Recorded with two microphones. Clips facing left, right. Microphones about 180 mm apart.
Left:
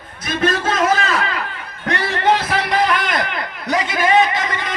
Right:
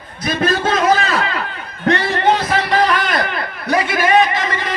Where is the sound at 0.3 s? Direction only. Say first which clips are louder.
Right 2 dB; 30° right (ahead or behind).